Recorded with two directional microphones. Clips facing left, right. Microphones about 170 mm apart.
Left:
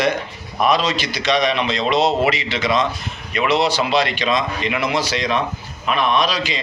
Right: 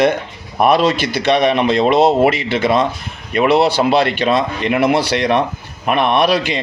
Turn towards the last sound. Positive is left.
turn(degrees=-60)  # may be behind; listen again after turning